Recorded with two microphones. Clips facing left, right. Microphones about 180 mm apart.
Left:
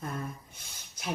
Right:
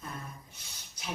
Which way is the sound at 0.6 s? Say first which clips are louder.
Left 1 dB; 50° left (ahead or behind).